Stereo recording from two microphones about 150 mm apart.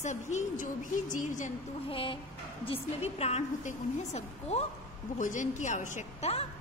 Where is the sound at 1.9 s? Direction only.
35° left (ahead or behind).